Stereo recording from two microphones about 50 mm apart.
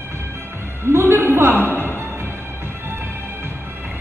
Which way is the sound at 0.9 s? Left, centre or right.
Right.